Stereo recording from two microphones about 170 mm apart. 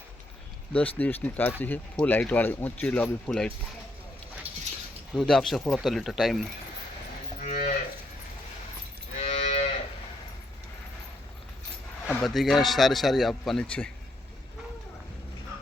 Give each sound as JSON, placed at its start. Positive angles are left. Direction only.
{"t": 0.7, "sound": "speech", "side_deg": 10}
{"t": 5.1, "sound": "speech", "side_deg": 0}
{"t": 7.4, "sound": "cattle", "side_deg": 50}
{"t": 9.1, "sound": "cattle", "side_deg": 45}
{"t": 12.0, "sound": "speech", "side_deg": 0}